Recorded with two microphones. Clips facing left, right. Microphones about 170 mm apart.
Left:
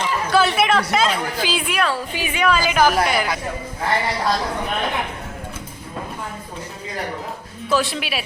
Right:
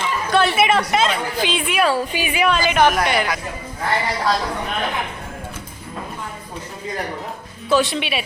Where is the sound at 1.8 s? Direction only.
10° right (ahead or behind).